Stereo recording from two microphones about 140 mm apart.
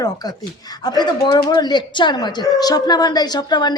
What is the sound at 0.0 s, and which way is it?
A woman's voice, 30° left (ahead or behind).